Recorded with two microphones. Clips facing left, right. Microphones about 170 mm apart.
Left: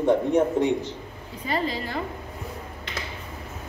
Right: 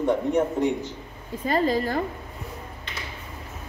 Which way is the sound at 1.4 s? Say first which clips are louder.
Right 5 dB; 45° right (ahead or behind).